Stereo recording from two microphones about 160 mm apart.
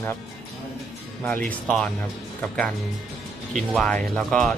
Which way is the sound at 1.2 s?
10° left (ahead or behind).